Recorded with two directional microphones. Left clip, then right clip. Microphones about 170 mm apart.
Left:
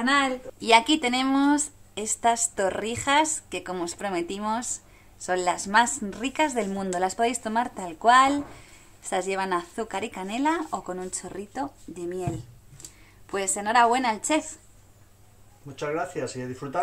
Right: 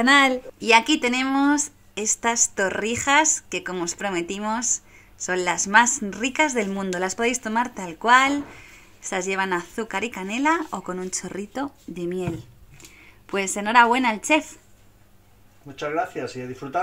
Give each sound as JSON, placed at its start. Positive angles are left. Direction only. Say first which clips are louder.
{"t": 0.0, "sound": "speech", "louder": "right 6 dB", "side_deg": -40}
{"t": 0.7, "sound": "a woman's voice", "louder": "right 2 dB", "side_deg": -10}
{"t": 15.8, "sound": "speech", "louder": "right 3 dB", "side_deg": 10}